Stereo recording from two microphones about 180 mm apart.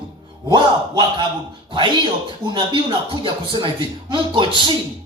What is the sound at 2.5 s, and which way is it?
A man's voice, 25° right (ahead or behind).